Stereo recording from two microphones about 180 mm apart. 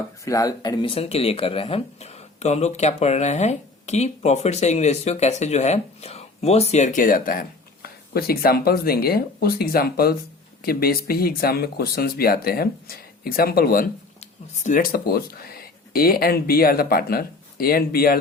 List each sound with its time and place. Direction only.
0.3 s speech: 20° left (ahead or behind); by 13.9 s 55° left (ahead or behind)
14.2 s speech: 45° left (ahead or behind)